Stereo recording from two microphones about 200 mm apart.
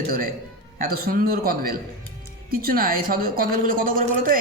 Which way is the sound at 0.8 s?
50° right (ahead or behind).